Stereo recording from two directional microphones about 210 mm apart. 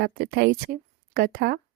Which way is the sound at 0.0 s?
50° right (ahead or behind).